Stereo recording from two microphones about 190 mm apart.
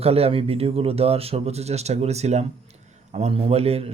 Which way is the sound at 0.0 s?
30° right (ahead or behind).